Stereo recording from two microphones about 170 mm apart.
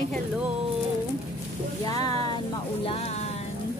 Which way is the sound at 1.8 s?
20° left (ahead or behind).